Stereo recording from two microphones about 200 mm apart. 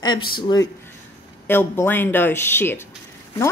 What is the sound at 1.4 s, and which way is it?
A woman's voice, 10° left (ahead or behind).